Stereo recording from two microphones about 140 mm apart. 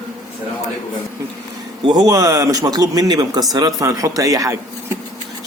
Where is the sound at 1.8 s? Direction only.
30° right (ahead or behind).